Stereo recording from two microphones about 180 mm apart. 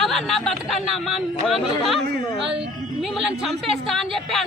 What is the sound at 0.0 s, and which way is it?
A woman's voice, centre (ahead or behind).